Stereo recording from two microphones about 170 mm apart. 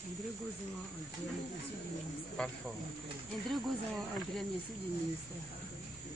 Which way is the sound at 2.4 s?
5° left (ahead or behind).